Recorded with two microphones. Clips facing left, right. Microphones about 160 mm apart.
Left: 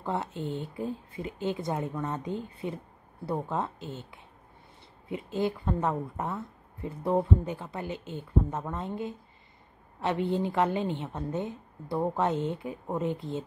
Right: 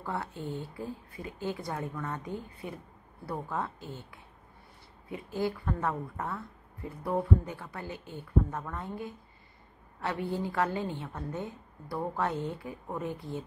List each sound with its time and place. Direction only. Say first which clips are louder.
0.0 s a woman's voice: left 4 dB; 20° left (ahead or behind)